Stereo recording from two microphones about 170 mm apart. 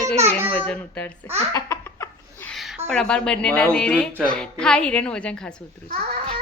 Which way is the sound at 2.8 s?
5° left (ahead or behind).